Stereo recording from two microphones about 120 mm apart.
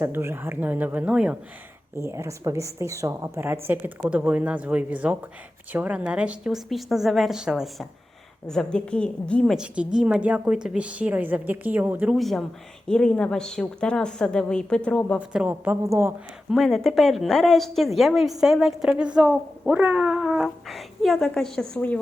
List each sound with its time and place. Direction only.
0.0 s a woman's voice: 20° right (ahead or behind)
2.0 s a woman's voice: 25° right (ahead or behind); by 9.6 s 5° left (ahead or behind)
9.6 s a woman's voice: 5° right (ahead or behind)
12.1 s a woman's voice: centre (ahead or behind)
15.3 s a woman's voice: 10° right (ahead or behind)
15.8 s a woman's voice: 25° right (ahead or behind)
16.5 s a woman's voice: centre (ahead or behind)